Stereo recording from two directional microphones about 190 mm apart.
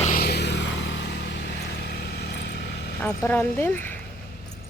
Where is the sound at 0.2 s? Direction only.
60° left (ahead or behind).